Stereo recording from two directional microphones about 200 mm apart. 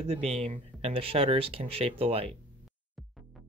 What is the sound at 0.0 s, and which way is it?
Speech, 30° right (ahead or behind).